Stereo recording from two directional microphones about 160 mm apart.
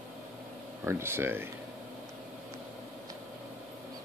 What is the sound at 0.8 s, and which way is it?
Speech, 15° right (ahead or behind).